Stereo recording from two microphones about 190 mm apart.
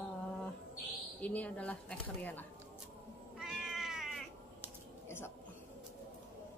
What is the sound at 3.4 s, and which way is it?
Cat, centre (ahead or behind).